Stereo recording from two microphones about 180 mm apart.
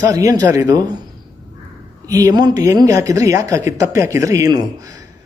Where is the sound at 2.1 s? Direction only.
20° right (ahead or behind).